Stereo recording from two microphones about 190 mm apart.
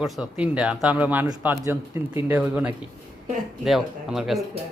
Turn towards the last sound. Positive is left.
turn(degrees=0)  # may be behind; listen again after turning